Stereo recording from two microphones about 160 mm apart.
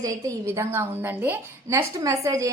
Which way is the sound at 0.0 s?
20° right (ahead or behind).